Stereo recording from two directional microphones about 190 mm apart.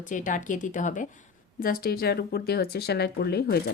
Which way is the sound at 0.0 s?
45° left (ahead or behind).